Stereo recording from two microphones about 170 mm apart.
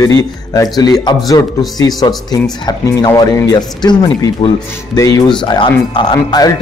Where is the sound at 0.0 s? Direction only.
20° left (ahead or behind).